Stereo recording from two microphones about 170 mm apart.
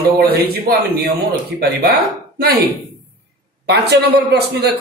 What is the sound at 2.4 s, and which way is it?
A man's voice, 65° right (ahead or behind).